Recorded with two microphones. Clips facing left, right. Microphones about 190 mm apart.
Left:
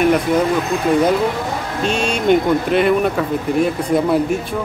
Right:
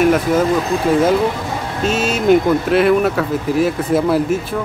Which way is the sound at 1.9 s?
5° right (ahead or behind).